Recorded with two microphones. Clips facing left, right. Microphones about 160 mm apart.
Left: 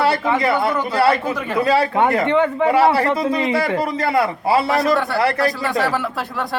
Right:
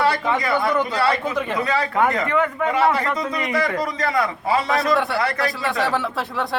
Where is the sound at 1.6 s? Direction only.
30° left (ahead or behind).